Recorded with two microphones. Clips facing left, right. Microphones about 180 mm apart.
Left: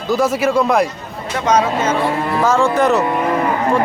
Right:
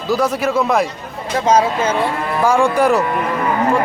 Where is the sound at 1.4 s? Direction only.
25° right (ahead or behind).